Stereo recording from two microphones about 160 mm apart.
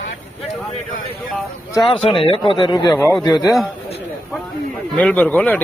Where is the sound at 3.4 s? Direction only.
Centre (ahead or behind).